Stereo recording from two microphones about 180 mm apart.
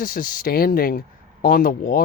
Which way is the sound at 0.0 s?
50° left (ahead or behind).